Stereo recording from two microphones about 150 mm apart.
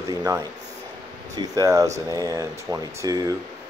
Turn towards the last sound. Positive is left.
turn(degrees=-25)  # may be behind; listen again after turning